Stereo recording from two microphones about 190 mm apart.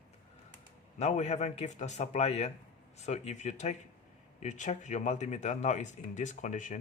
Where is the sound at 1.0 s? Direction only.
35° left (ahead or behind).